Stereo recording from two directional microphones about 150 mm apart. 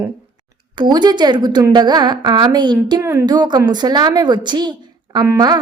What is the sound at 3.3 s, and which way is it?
A woman's voice, 30° right (ahead or behind).